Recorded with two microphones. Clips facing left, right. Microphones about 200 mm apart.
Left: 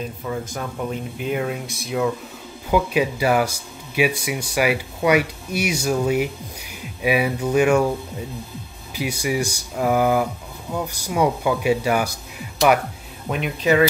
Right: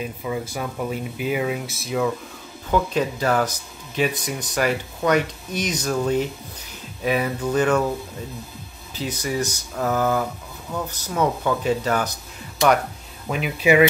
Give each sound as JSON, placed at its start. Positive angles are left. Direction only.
{"t": 0.0, "sound": "speech", "side_deg": -10}
{"t": 8.9, "sound": "speech", "side_deg": 10}
{"t": 13.3, "sound": "speech", "side_deg": -5}